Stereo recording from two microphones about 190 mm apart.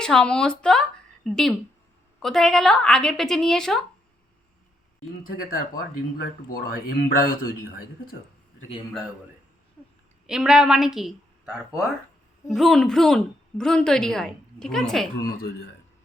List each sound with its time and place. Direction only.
0.0 s a woman's voice: 5° left (ahead or behind)
5.2 s speech: 45° left (ahead or behind)
10.2 s a woman's voice: 5° right (ahead or behind)
12.5 s a woman's voice: centre (ahead or behind)